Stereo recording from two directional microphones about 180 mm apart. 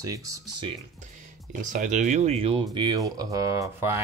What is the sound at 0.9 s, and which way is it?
Speech, 45° right (ahead or behind).